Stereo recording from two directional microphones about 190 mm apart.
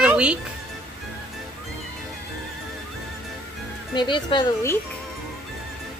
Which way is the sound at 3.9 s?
25° left (ahead or behind).